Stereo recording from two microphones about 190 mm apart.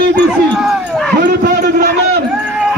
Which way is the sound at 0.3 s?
5° right (ahead or behind).